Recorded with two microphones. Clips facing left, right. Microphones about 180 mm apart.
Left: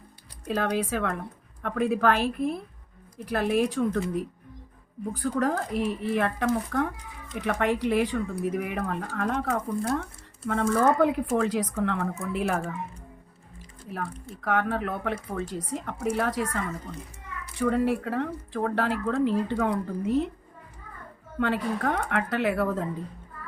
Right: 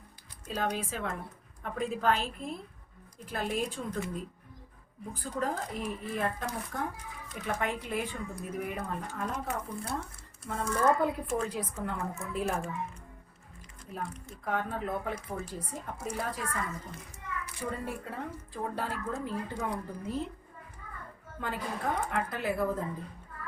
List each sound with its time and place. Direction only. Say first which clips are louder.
0.4 s a woman's voice: left 6 dB; 65° left (ahead or behind)
5.1 s a woman's voice: left 7 dB; 75° left (ahead or behind)
14.4 s speech: left 6 dB; 80° left
17.6 s a woman's voice: left 14 dB; 75° left (ahead or behind)
21.3 s a woman's voice: left 9 dB; 75° left (ahead or behind)